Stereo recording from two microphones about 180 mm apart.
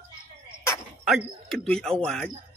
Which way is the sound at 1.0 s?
Centre (ahead or behind).